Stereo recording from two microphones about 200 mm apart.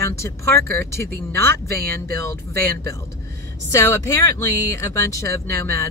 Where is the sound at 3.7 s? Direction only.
15° left (ahead or behind).